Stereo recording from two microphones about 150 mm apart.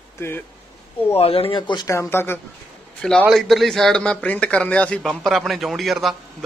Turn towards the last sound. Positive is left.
turn(degrees=0)  # may be behind; listen again after turning